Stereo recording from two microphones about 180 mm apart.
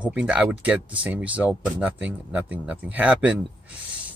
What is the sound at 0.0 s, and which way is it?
Speech, 5° right (ahead or behind).